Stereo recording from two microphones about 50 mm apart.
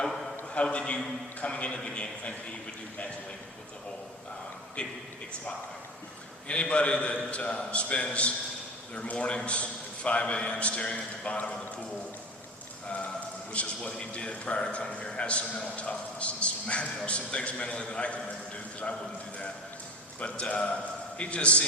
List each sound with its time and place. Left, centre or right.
0.5 s a man's voice: left
4.8 s a man's voice: left
6.5 s a man's voice: left
13.5 s a man's voice: left
20.1 s a man's voice: left